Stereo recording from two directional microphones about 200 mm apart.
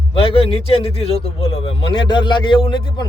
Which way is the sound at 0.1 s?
25° left (ahead or behind).